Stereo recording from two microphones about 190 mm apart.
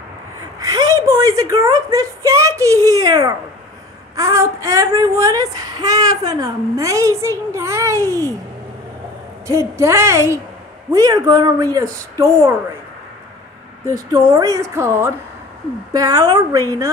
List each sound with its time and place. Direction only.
0.6 s speech: 20° right (ahead or behind)
9.5 s speech: 15° right (ahead or behind)
13.8 s speech: 15° right (ahead or behind)